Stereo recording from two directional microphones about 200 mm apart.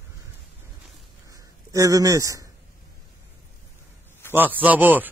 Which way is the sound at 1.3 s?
15° right (ahead or behind).